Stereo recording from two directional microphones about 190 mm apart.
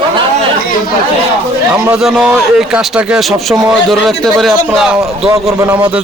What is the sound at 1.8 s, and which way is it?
Speech, 5° right (ahead or behind).